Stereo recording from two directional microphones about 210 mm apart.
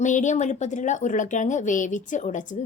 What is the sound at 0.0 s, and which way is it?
A woman's voice, 35° left (ahead or behind).